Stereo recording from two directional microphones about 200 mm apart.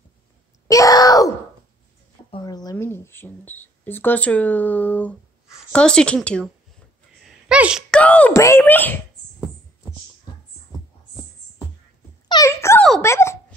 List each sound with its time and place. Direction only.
0.7 s wail: 15° left (ahead or behind)
2.3 s a woman's voice: 20° left (ahead or behind)
7.2 s a sound: 5° right (ahead or behind)
7.9 s speech: 5° left (ahead or behind)
12.3 s a sound: 15° left (ahead or behind)
13.0 s dog: 15° left (ahead or behind)